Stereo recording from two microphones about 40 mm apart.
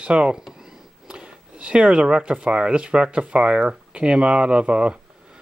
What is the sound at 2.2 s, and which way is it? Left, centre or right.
Speech, right.